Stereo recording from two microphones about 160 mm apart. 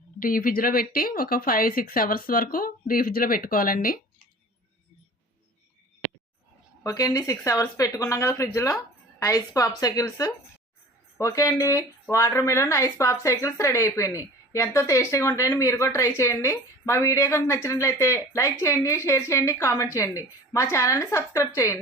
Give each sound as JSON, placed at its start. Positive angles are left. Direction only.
{"t": 0.2, "sound": "speech", "side_deg": 60}
{"t": 6.8, "sound": "a woman's voice", "side_deg": 20}